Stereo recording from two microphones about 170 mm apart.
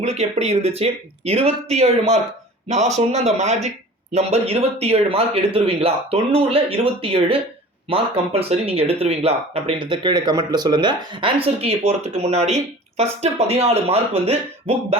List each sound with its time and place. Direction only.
0.0 s speech: 40° right (ahead or behind)